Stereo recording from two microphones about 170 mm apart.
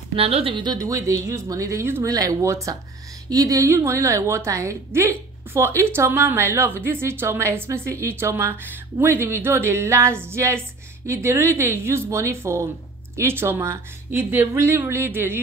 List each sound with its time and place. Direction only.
0.1 s a woman's voice: 35° right (ahead or behind); by 15.4 s 15° right (ahead or behind)